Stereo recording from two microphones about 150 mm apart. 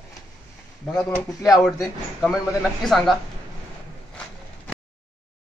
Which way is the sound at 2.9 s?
Centre (ahead or behind).